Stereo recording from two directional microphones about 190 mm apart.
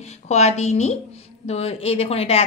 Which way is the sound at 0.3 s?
35° left (ahead or behind).